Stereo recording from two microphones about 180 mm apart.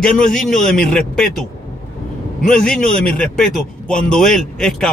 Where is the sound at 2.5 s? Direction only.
5° left (ahead or behind).